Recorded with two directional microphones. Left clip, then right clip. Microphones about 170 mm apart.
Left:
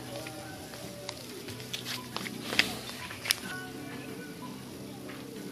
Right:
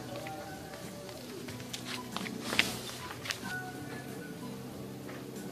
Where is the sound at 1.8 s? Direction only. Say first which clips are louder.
Right 1 dB; 55° left (ahead or behind).